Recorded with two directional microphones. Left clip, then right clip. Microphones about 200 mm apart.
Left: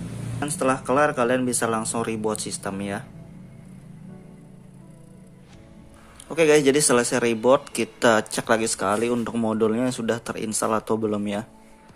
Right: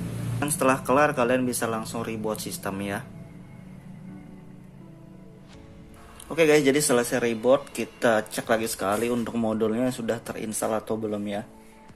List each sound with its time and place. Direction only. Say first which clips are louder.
0.4 s speech: even; 10° left (ahead or behind)
6.2 s speech: left 2 dB; 10° left (ahead or behind)